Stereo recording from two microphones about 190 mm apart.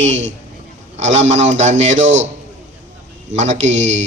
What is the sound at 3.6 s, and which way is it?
Speech, 75° right (ahead or behind).